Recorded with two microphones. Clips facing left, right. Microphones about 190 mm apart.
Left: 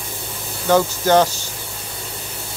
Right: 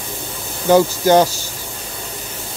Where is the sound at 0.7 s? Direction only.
15° right (ahead or behind).